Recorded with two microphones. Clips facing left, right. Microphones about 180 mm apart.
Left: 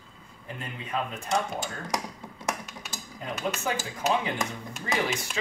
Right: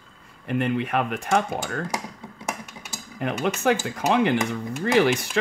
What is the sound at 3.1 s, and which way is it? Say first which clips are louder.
Speech: right 7 dB; 70° right (ahead or behind).